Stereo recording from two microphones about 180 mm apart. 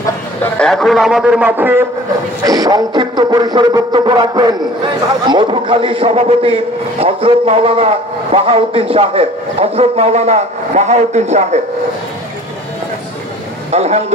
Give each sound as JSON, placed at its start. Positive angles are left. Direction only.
{"t": 0.4, "sound": "a man's voice", "side_deg": 5}
{"t": 13.7, "sound": "speech", "side_deg": -35}